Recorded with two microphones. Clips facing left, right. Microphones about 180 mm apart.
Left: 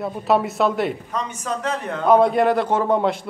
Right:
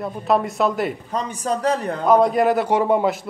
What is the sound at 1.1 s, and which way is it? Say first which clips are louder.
Speech: right 3 dB; 35° right (ahead or behind).